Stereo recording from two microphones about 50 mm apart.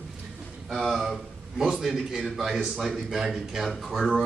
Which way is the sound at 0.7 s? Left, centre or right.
Centre.